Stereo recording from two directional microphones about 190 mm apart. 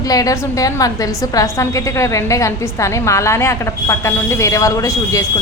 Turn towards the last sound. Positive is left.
turn(degrees=15)  # may be behind; listen again after turning